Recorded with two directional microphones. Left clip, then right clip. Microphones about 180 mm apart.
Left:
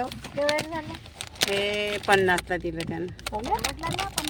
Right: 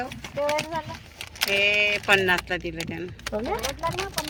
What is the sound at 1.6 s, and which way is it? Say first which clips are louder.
Speech: right 6 dB; 25° left (ahead or behind).